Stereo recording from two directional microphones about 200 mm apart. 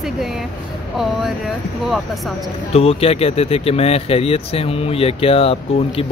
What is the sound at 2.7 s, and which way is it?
Speech, 30° left (ahead or behind).